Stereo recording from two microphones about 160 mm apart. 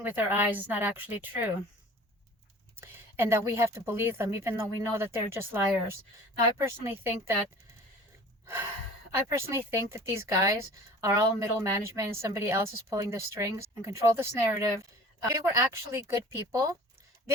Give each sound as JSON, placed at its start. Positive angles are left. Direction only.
{"t": 0.0, "sound": "speech", "side_deg": -10}
{"t": 2.7, "sound": "speech", "side_deg": -15}
{"t": 9.1, "sound": "a woman's voice", "side_deg": -15}